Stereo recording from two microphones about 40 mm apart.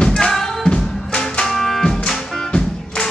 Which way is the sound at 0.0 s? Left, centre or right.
Left.